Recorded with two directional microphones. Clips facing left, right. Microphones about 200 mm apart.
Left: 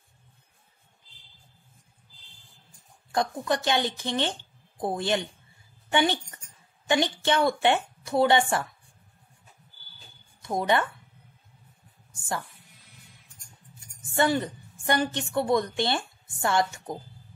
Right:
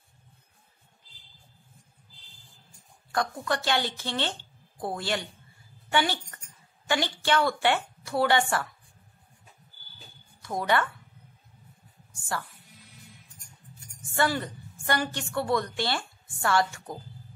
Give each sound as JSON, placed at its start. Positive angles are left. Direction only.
{"t": 3.1, "sound": "a woman's voice", "side_deg": 20}
{"t": 10.4, "sound": "speech", "side_deg": 20}
{"t": 14.1, "sound": "a woman's voice", "side_deg": 20}